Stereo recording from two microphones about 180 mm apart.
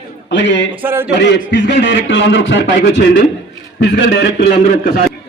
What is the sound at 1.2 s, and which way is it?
A man's voice, 75° left (ahead or behind).